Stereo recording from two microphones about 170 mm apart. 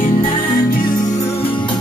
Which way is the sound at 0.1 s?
55° left (ahead or behind).